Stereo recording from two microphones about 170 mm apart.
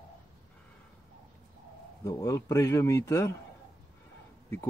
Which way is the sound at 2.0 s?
20° left (ahead or behind).